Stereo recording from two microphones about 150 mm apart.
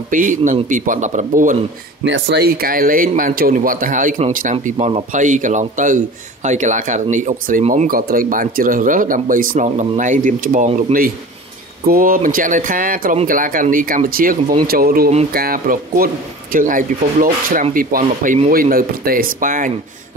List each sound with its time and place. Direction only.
0.1 s speech: 60° right (ahead or behind)
2.3 s speech: 90° right; by 11.1 s 60° right (ahead or behind)
11.8 s speech: 75° right (ahead or behind)
14.7 s speech: 80° right
16.5 s speech: 65° right (ahead or behind)